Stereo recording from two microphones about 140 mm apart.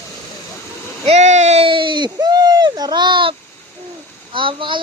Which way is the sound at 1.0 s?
55° right (ahead or behind).